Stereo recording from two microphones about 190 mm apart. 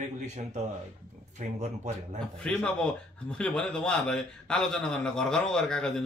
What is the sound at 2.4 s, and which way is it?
A man's voice, 5° left (ahead or behind).